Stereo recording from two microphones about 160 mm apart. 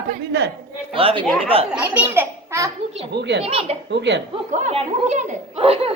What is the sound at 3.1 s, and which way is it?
Speech, 90° right.